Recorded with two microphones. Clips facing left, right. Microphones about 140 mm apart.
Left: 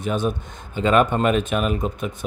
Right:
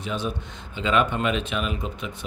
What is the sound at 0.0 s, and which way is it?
Speech, 50° left (ahead or behind).